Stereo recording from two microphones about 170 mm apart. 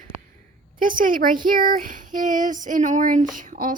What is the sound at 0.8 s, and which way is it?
Speech, 55° right (ahead or behind).